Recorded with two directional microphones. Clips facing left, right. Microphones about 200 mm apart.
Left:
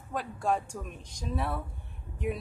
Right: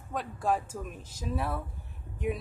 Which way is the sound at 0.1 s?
Centre (ahead or behind).